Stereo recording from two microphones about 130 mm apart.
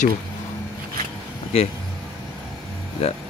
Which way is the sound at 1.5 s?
50° left (ahead or behind).